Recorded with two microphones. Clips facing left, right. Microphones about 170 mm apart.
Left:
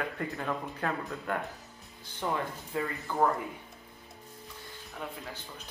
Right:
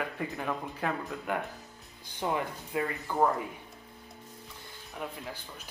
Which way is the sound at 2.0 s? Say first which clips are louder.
Right 1 dB; 15° right (ahead or behind).